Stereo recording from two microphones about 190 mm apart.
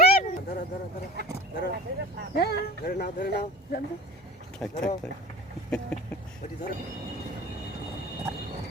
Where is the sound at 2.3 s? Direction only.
55° left (ahead or behind).